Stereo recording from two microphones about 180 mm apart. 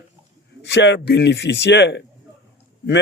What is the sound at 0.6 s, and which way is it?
A man's voice, 70° left (ahead or behind).